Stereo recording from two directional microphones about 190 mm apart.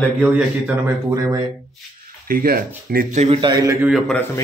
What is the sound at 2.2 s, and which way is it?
Speech, 50° right (ahead or behind).